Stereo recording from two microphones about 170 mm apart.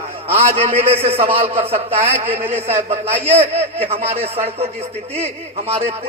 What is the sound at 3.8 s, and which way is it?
A man's voice, 35° right (ahead or behind).